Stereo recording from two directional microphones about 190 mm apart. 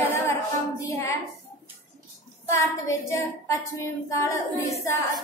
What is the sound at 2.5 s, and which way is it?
A woman's voice, 15° left (ahead or behind).